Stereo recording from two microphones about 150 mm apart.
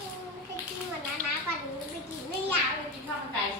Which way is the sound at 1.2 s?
65° right (ahead or behind).